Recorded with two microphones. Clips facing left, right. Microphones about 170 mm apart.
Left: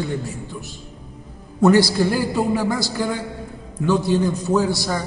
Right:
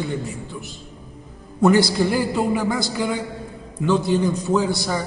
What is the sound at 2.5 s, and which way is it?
Speech, 5° left (ahead or behind).